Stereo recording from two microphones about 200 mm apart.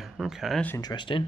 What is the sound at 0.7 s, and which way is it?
Speech, 20° left (ahead or behind).